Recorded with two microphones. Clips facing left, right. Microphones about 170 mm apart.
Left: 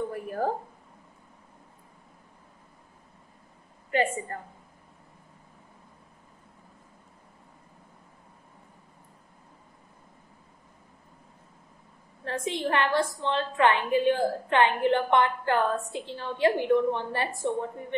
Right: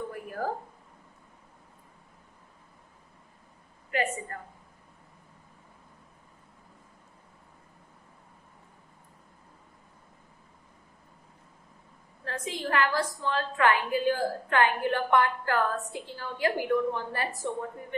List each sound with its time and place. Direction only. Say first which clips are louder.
0.1 s a sound: left 4 dB; 25° left (ahead or behind)
3.9 s a woman's voice: left 4 dB; 30° left (ahead or behind)
12.3 s a woman's voice: left 4 dB; 25° left (ahead or behind)